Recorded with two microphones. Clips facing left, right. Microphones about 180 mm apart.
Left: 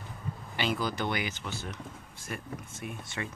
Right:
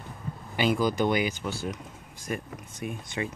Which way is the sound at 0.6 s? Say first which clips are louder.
Right 7 dB; 15° right (ahead or behind).